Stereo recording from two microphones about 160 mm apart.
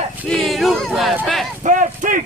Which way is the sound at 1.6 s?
55° right (ahead or behind).